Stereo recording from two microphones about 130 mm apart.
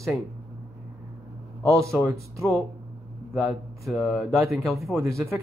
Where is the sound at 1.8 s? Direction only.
25° right (ahead or behind).